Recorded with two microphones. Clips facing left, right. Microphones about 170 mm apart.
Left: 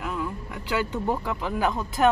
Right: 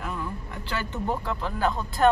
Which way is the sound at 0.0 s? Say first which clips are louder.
Left 3 dB; 10° left (ahead or behind).